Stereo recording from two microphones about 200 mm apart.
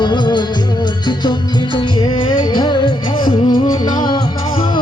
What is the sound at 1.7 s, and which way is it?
Music, 25° left (ahead or behind).